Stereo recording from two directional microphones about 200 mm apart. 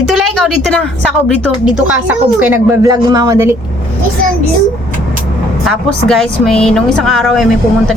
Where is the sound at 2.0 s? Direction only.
10° right (ahead or behind).